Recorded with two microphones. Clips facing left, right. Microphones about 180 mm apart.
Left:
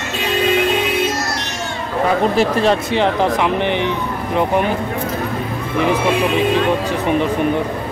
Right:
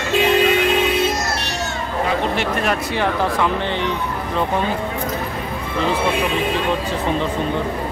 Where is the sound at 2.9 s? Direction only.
20° left (ahead or behind).